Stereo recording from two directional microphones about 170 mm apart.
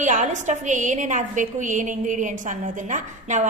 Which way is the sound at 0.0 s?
45° right (ahead or behind).